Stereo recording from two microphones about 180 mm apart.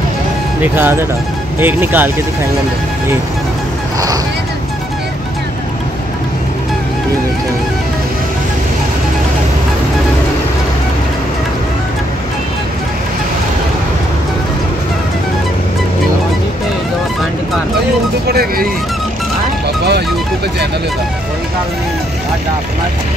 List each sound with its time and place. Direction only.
0.6 s speech: 10° right (ahead or behind)
18.3 s vehicle: 60° right (ahead or behind)